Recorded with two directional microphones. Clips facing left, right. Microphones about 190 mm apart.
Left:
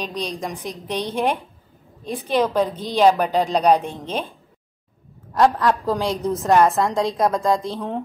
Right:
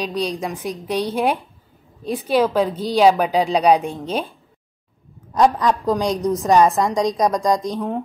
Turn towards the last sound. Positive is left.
turn(degrees=-15)  # may be behind; listen again after turning